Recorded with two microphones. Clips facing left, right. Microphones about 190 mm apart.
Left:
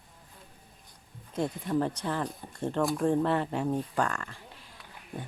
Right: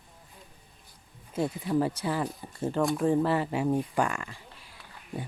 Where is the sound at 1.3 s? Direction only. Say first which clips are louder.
Right 2 dB; 5° right (ahead or behind).